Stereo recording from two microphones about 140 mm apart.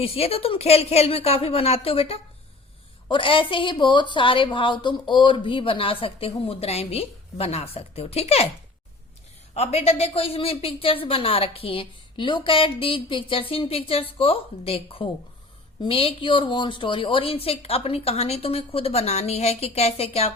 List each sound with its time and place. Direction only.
0.0 s a woman's voice: 45° left (ahead or behind)
9.6 s a woman's voice: 50° left (ahead or behind)